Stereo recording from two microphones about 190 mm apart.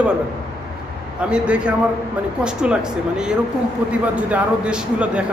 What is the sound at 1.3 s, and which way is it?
A man's voice, 5° right (ahead or behind).